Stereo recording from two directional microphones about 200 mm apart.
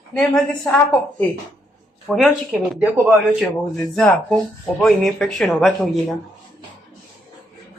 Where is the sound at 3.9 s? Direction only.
5° left (ahead or behind).